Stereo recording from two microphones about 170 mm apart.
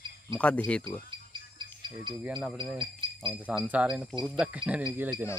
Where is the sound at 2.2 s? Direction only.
5° right (ahead or behind).